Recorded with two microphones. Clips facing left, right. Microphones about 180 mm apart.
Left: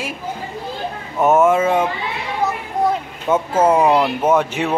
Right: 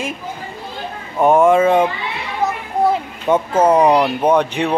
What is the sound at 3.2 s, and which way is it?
Speech, 5° left (ahead or behind).